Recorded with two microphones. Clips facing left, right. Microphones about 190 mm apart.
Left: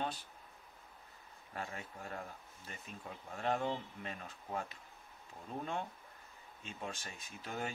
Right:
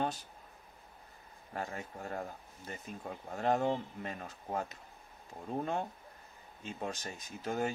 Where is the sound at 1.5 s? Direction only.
40° right (ahead or behind).